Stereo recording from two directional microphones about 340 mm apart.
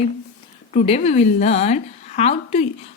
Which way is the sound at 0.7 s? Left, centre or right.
Centre.